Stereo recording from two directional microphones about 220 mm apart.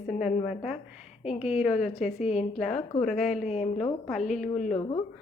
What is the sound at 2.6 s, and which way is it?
Speech, centre (ahead or behind).